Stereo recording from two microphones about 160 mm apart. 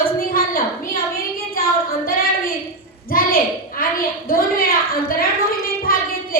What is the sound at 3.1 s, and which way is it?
A child's voice, 65° left (ahead or behind).